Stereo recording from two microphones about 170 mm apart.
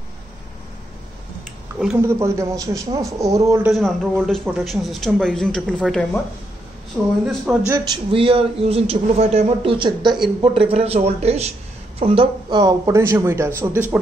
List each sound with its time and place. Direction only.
1.8 s speech: 5° right (ahead or behind)
2.0 s a man's voice: 15° right (ahead or behind)
3.6 s speech: centre (ahead or behind)
7.9 s a man's voice: 30° right (ahead or behind); by 13.9 s 10° right (ahead or behind)